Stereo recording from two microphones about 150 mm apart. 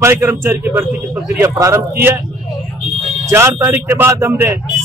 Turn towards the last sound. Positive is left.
turn(degrees=-15)  # may be behind; listen again after turning